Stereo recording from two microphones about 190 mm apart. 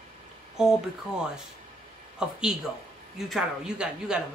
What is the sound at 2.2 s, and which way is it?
Speech, 5° right (ahead or behind).